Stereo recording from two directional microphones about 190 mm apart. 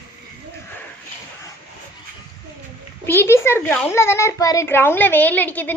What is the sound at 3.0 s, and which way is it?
A child's voice, 10° left (ahead or behind).